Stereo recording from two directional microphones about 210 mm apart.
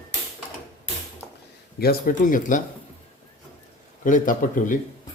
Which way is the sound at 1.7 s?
45° left (ahead or behind).